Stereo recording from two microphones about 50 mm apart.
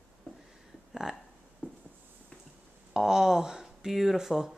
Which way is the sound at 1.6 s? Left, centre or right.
Left.